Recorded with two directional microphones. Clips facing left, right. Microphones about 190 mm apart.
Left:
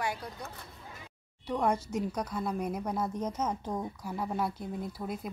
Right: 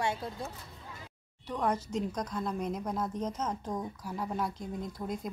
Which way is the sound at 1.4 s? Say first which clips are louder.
Left 2 dB; 10° left (ahead or behind).